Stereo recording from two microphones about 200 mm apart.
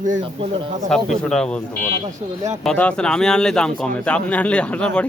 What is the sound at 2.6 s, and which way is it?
Speech, 5° left (ahead or behind).